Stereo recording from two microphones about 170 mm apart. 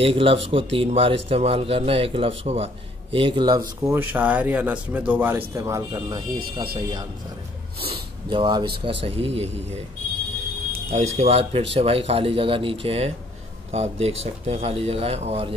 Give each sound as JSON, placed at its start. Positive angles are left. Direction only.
{"t": 0.0, "sound": "a man's voice", "side_deg": -35}
{"t": 10.9, "sound": "speech", "side_deg": -40}